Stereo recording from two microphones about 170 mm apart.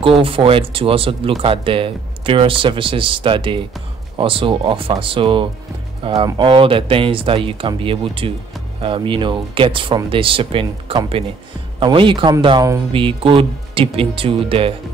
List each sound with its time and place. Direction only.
0.0 s speech: 30° right (ahead or behind)